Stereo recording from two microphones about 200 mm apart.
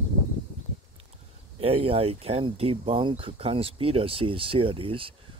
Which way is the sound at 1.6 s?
30° right (ahead or behind).